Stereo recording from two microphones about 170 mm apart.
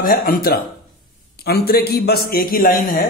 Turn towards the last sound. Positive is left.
turn(degrees=55)  # may be behind; listen again after turning